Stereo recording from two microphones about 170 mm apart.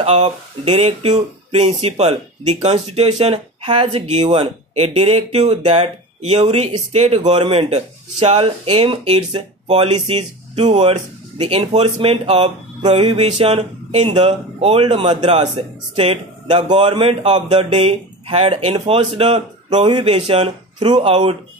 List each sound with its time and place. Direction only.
0.0 s speech: 40° right (ahead or behind)